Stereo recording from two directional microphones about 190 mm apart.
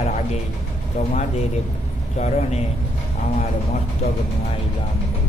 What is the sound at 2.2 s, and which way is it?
Speech, 35° left (ahead or behind).